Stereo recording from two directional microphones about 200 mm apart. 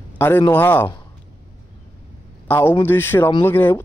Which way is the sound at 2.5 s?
10° left (ahead or behind).